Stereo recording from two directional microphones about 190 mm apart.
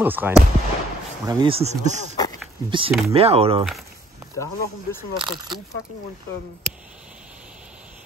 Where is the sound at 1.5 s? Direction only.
35° right (ahead or behind).